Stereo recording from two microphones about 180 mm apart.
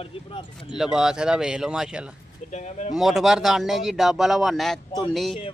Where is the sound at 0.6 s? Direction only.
5° right (ahead or behind).